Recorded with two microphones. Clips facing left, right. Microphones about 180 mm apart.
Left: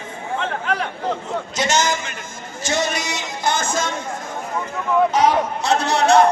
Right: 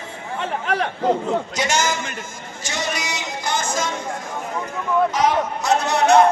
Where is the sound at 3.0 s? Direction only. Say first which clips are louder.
Left 4 dB; 25° left (ahead or behind).